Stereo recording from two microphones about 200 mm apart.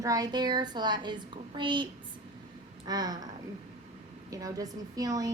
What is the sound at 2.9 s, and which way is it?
Speech, 20° right (ahead or behind).